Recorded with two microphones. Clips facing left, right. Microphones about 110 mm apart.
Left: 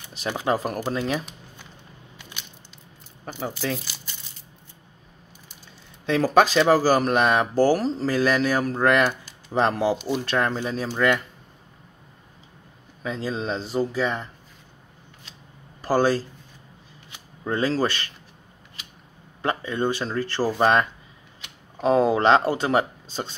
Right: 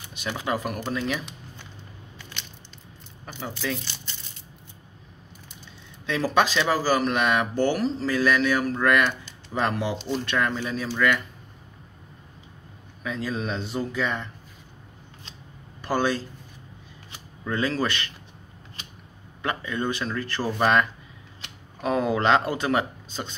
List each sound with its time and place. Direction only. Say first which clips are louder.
0.5 s speech: left 4 dB; 35° left (ahead or behind)
2.1 s biting: right 1 dB; 15° left (ahead or behind)
3.8 s crumpling: right 1 dB; 10° left (ahead or behind)
6.0 s speech: left 4 dB; 40° left (ahead or behind)
9.9 s speech: left 2 dB; 10° left (ahead or behind)
10.2 s speech: even; 35° left (ahead or behind)
13.0 s speech: left 1 dB; 30° left (ahead or behind)
15.8 s speech: left 4 dB; 35° left (ahead or behind)
17.5 s speech: left 3 dB; 35° left (ahead or behind)
19.4 s speech: left 3 dB; 30° left (ahead or behind)
21.8 s speech: left 4 dB; 30° left (ahead or behind)